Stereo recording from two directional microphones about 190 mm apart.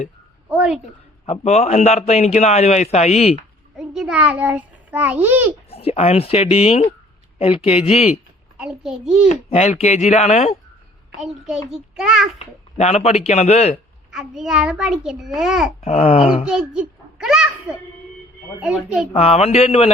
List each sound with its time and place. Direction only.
0.5 s a child's voice: 5° right (ahead or behind)
1.3 s a man's voice: 35° left (ahead or behind)
3.8 s a child's voice: 5° right (ahead or behind)
5.7 s a man's voice: 30° left (ahead or behind)
8.5 s a child's voice: 5° right (ahead or behind)
9.3 s a man's voice: 35° left (ahead or behind)
11.2 s a child's voice: 5° right (ahead or behind)
12.4 s a man's voice: 35° left (ahead or behind)
14.1 s a child's voice: centre (ahead or behind)
15.8 s a man's voice: 35° left (ahead or behind)
16.5 s a child's voice: 5° right (ahead or behind)
18.6 s a child's voice: 5° right (ahead or behind)
19.1 s a man's voice: 35° left (ahead or behind)